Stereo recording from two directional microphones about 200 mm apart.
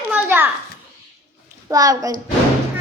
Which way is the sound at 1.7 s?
15° right (ahead or behind).